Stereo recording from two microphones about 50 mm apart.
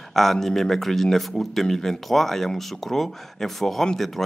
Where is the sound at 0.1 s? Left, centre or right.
Centre.